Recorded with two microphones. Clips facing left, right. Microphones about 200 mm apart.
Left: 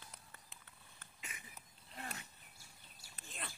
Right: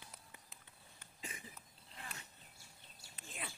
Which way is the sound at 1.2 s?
30° right (ahead or behind).